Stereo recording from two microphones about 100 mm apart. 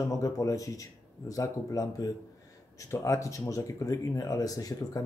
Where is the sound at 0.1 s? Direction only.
35° left (ahead or behind).